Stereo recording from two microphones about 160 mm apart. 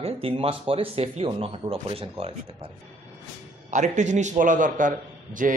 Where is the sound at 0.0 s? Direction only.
35° right (ahead or behind).